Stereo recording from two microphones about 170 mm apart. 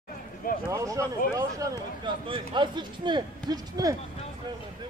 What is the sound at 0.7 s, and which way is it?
Speech, 20° right (ahead or behind).